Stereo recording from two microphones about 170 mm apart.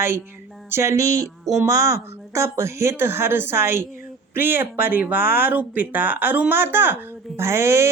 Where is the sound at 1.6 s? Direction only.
20° right (ahead or behind).